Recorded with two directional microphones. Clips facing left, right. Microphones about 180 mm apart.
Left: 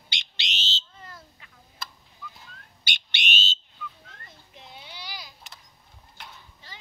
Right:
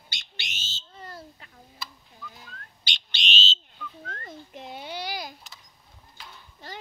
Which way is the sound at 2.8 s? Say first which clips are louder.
Left 1 dB; 55° left (ahead or behind).